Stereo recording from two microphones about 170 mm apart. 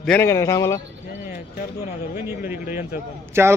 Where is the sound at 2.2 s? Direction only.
10° right (ahead or behind).